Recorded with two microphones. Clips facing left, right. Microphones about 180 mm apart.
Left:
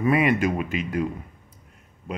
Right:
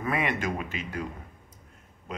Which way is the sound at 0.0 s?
15° left (ahead or behind).